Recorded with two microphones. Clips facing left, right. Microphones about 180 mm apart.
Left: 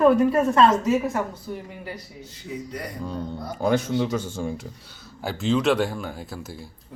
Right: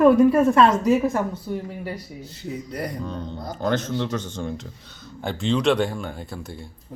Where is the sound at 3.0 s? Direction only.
10° left (ahead or behind).